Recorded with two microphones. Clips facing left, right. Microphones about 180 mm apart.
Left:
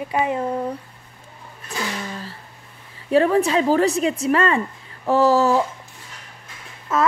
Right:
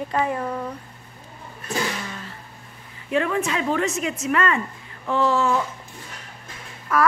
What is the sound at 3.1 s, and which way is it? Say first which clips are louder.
A woman's voice: left 6 dB; 35° left (ahead or behind).